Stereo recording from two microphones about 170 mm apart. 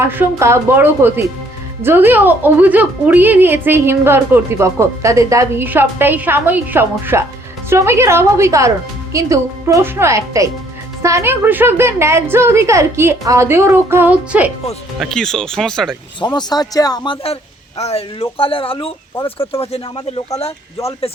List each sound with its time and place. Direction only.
0.0 s a woman's voice: 15° right (ahead or behind); by 16.0 s 5° left (ahead or behind)
16.2 s speech: 25° left (ahead or behind)